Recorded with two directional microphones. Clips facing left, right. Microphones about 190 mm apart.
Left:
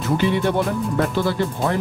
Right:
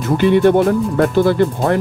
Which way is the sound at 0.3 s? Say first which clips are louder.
Right 9 dB; 55° right (ahead or behind).